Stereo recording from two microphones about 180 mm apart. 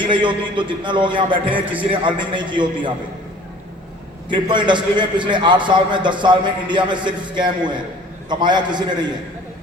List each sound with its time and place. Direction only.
0.0 s a man's voice: 25° right (ahead or behind)
4.3 s a man's voice: 25° right (ahead or behind)